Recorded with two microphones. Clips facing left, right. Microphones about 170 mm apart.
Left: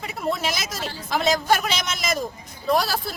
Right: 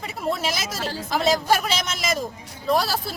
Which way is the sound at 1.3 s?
5° right (ahead or behind).